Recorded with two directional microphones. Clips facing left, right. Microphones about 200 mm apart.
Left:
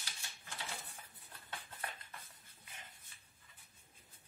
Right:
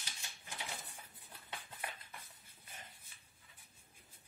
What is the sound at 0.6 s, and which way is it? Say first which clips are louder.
Coin: even; 15° right (ahead or behind).